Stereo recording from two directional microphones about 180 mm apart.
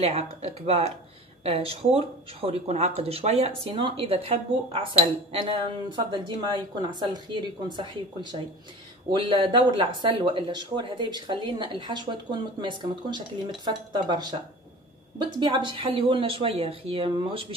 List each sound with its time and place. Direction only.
0.0 s speech: 35° right (ahead or behind)